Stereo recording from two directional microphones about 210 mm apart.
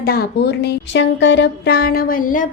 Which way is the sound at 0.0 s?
45° left (ahead or behind).